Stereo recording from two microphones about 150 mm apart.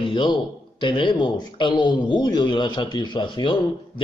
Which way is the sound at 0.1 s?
30° left (ahead or behind).